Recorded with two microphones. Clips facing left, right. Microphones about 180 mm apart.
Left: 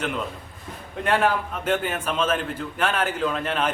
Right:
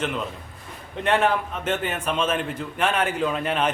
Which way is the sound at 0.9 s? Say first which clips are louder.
Right 1 dB; centre (ahead or behind).